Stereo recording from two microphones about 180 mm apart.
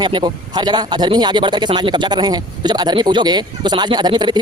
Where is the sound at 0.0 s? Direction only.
25° right (ahead or behind).